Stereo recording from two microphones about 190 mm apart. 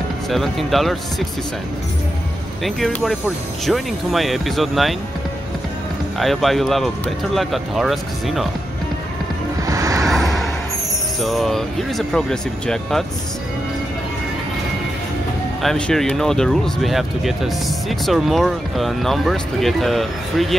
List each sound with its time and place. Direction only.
0.3 s speech: centre (ahead or behind)
2.6 s speech: centre (ahead or behind)
6.1 s speech: centre (ahead or behind)
9.7 s vehicle: 15° right (ahead or behind)
10.0 s vehicle: centre (ahead or behind)
11.1 s speech: centre (ahead or behind)
15.6 s speech: centre (ahead or behind)